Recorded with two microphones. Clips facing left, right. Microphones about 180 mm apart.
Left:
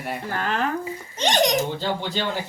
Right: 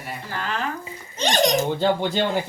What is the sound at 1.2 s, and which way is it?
Speech, 20° left (ahead or behind).